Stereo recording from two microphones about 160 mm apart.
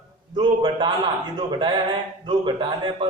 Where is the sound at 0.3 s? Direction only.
30° right (ahead or behind).